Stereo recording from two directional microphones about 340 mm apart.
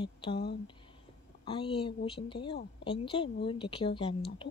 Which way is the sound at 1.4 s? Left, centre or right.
Centre.